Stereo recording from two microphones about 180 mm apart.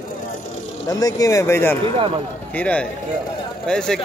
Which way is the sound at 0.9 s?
20° left (ahead or behind).